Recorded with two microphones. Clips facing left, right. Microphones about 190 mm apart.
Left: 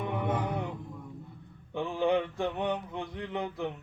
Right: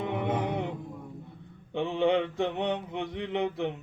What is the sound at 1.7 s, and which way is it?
Mantra, 20° right (ahead or behind).